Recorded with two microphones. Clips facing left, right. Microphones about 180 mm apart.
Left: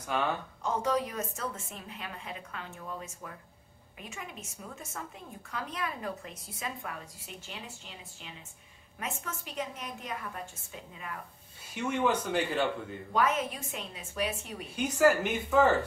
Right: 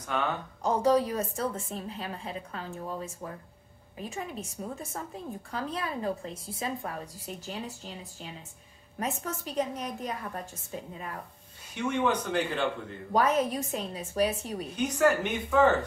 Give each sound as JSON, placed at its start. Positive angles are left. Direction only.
{"t": 0.6, "sound": "a woman's voice", "side_deg": -35}
{"t": 11.7, "sound": "speech", "side_deg": 5}
{"t": 13.1, "sound": "a woman's voice", "side_deg": -35}
{"t": 14.8, "sound": "speech", "side_deg": 5}